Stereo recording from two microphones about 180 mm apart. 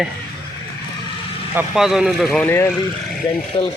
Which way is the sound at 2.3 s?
10° left (ahead or behind).